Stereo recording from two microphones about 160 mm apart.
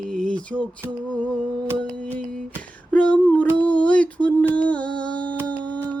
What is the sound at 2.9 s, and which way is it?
Female singing, 10° left (ahead or behind).